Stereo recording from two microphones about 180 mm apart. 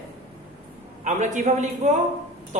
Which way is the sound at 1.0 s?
40° right (ahead or behind).